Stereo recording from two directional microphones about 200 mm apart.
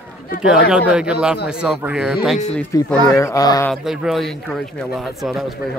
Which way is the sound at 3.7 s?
Centre (ahead or behind).